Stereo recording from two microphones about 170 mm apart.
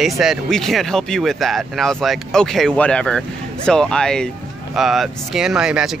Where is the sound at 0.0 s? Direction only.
Centre (ahead or behind).